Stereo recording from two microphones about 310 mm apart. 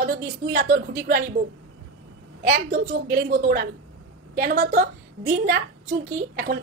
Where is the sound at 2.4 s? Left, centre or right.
Right.